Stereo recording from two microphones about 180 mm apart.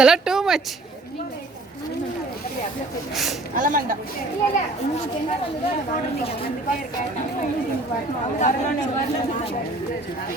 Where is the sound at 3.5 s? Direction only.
45° right (ahead or behind).